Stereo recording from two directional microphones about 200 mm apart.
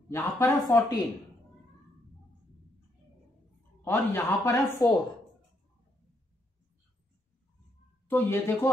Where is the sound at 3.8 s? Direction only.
10° left (ahead or behind).